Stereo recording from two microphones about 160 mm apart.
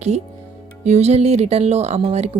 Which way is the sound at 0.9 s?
40° right (ahead or behind).